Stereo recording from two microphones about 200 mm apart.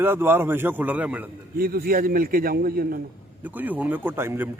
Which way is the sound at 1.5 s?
50° right (ahead or behind).